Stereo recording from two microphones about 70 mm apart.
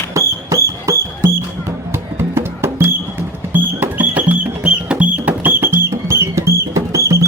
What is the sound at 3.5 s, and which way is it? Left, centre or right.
Music, right.